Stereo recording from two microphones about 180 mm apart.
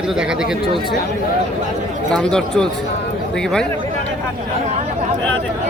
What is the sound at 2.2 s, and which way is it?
Speech, 5° left (ahead or behind).